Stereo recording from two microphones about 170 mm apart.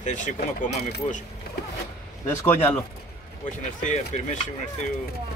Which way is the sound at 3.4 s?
45° left (ahead or behind).